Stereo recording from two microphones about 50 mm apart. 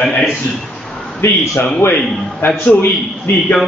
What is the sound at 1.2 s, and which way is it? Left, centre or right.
Speech, left.